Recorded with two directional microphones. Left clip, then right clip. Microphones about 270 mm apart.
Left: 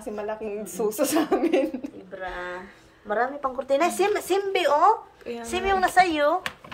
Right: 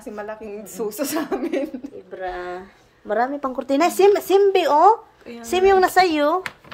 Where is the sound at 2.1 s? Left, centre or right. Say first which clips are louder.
Right 4 dB; right.